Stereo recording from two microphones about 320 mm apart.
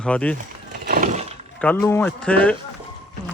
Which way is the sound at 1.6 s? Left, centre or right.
Centre.